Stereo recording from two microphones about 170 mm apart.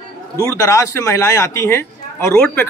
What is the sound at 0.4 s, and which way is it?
A man's voice, 15° left (ahead or behind).